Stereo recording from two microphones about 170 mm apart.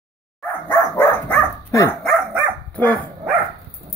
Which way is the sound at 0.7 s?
10° left (ahead or behind).